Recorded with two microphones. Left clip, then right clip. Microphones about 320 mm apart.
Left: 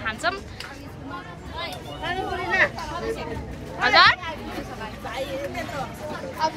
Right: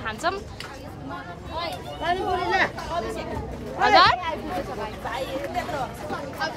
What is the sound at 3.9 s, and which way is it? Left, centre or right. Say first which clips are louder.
Speech: left 1 dB; centre.